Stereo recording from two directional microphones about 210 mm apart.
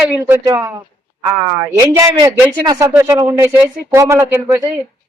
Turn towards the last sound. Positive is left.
turn(degrees=-10)  # may be behind; listen again after turning